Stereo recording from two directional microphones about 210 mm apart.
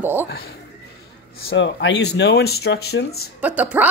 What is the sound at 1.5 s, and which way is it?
Speech, 60° left (ahead or behind).